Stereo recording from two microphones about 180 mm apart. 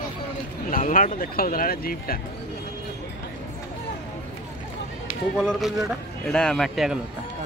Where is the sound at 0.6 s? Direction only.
50° left (ahead or behind).